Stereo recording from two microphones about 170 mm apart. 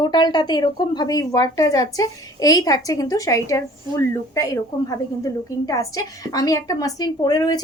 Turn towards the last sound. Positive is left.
turn(degrees=25)  # may be behind; listen again after turning